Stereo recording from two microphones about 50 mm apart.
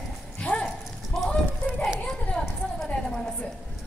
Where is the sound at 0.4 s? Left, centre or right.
Left.